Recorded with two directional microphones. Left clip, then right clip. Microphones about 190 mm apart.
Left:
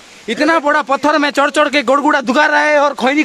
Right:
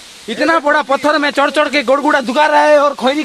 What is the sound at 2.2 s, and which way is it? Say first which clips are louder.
Speech: even; 55° left (ahead or behind).